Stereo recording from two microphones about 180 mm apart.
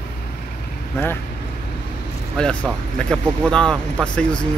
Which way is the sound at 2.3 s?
5° left (ahead or behind).